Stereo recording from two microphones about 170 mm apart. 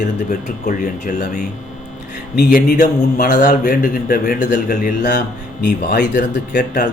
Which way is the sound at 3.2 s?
65° left (ahead or behind).